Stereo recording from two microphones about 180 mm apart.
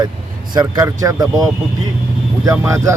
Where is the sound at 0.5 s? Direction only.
20° right (ahead or behind).